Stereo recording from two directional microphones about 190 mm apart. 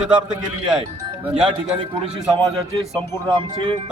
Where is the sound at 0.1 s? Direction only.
5° right (ahead or behind).